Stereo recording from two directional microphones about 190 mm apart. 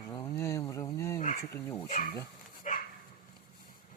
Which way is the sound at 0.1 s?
20° left (ahead or behind).